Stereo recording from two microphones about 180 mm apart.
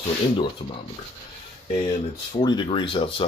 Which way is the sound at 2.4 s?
25° left (ahead or behind).